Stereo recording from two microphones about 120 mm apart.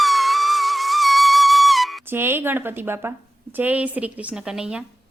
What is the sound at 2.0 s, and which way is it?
A woman's voice, 20° right (ahead or behind).